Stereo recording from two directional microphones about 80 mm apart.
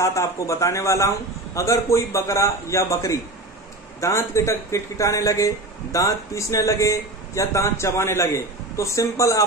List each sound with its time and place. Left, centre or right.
0.0 s a man's voice: left